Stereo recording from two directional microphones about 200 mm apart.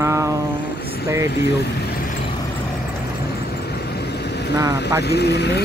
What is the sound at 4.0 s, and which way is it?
Vehicle, 55° left (ahead or behind).